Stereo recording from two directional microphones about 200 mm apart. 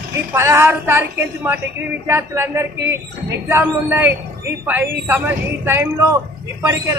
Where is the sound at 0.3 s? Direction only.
10° right (ahead or behind).